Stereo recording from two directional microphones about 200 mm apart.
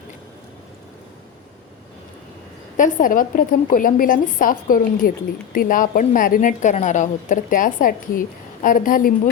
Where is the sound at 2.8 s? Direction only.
40° left (ahead or behind).